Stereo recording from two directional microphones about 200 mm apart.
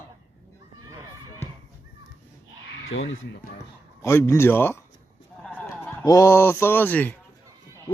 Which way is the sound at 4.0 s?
15° left (ahead or behind).